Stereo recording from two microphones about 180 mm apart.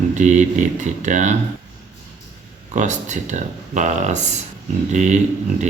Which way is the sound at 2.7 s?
40° right (ahead or behind).